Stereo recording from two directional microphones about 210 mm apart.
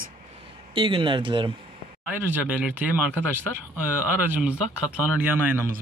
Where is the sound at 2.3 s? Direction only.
5° right (ahead or behind).